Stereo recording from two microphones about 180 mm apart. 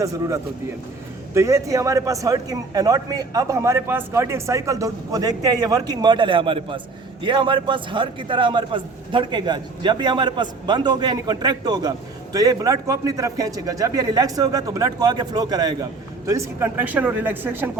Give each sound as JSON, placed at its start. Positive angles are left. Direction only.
{"t": 0.0, "sound": "a man's voice", "side_deg": -20}